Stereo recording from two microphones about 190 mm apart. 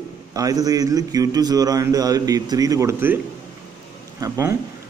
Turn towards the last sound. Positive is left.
turn(degrees=-15)  # may be behind; listen again after turning